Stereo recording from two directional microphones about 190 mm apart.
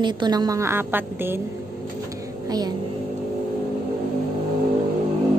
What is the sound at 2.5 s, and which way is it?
Music, 20° right (ahead or behind).